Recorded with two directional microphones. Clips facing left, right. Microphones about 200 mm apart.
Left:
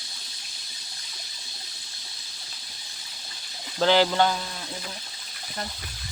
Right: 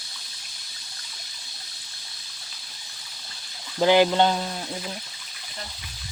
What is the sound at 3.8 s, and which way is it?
Speech, 15° right (ahead or behind).